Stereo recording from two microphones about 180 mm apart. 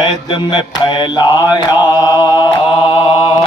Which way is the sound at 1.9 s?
20° left (ahead or behind).